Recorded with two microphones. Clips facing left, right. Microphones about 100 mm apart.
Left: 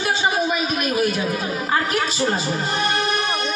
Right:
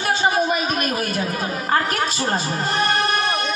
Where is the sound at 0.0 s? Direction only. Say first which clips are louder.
Right 1 dB; 45° right (ahead or behind).